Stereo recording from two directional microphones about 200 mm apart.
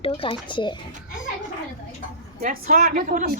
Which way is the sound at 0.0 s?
25° left (ahead or behind).